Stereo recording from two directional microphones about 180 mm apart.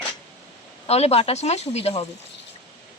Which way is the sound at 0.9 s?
35° left (ahead or behind).